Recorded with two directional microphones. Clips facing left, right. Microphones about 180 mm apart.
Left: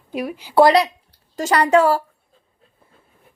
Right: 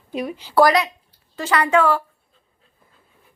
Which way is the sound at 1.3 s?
40° left (ahead or behind).